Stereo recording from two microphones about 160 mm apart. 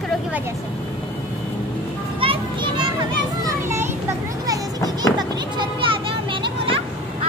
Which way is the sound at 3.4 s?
15° right (ahead or behind).